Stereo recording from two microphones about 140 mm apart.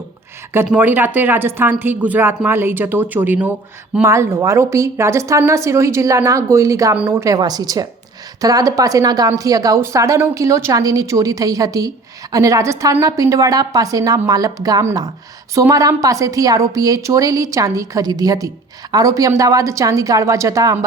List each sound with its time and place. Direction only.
0.5 s a woman's voice: 15° right (ahead or behind)